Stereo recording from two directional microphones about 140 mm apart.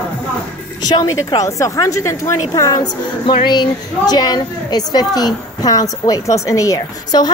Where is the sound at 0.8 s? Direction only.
25° left (ahead or behind).